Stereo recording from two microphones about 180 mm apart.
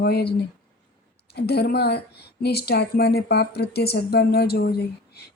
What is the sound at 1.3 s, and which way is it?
A woman's voice, 65° left (ahead or behind).